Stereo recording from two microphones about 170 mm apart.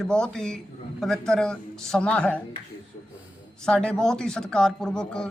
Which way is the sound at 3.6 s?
5° left (ahead or behind).